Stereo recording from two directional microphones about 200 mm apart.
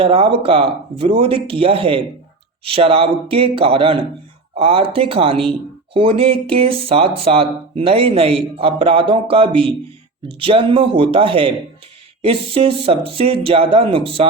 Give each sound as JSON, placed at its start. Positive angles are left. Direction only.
{"t": 0.0, "sound": "speech", "side_deg": -30}